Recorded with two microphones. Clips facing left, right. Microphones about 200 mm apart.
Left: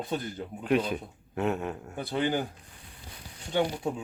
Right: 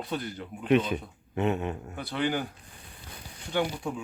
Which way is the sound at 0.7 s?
Centre (ahead or behind).